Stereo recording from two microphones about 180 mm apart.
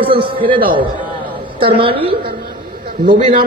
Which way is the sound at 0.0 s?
30° right (ahead or behind).